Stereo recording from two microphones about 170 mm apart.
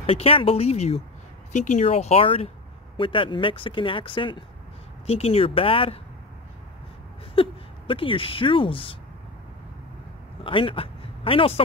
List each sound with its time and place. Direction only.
0.0 s speech: 35° left (ahead or behind)
7.3 s speech: 30° left (ahead or behind)
10.4 s speech: 30° left (ahead or behind)